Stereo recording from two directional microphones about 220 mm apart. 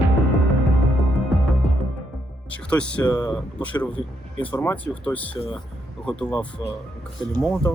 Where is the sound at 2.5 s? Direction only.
5° left (ahead or behind).